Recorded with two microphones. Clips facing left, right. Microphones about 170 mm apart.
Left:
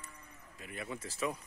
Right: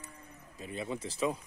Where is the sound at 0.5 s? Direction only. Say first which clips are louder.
Right 5 dB; 25° right (ahead or behind).